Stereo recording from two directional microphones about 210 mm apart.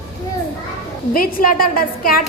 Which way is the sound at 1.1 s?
45° left (ahead or behind).